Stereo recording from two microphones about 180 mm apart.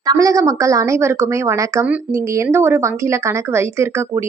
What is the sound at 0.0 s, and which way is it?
A woman's voice, 20° right (ahead or behind).